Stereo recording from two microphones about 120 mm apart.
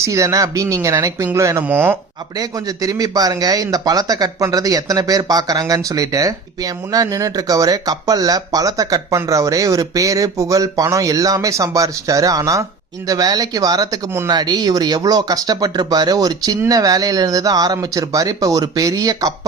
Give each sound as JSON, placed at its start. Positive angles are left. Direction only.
{"t": 0.0, "sound": "speech", "side_deg": -25}
{"t": 2.3, "sound": "speech", "side_deg": -30}
{"t": 14.3, "sound": "speech", "side_deg": -35}